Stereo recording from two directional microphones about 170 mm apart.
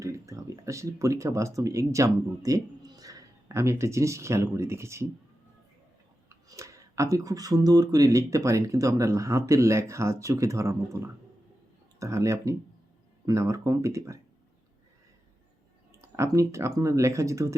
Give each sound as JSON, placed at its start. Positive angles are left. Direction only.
{"t": 0.0, "sound": "speech", "side_deg": -20}
{"t": 6.2, "sound": "speech", "side_deg": -20}
{"t": 16.0, "sound": "speech", "side_deg": -15}